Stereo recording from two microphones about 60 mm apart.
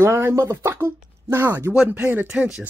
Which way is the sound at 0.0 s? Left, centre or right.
Right.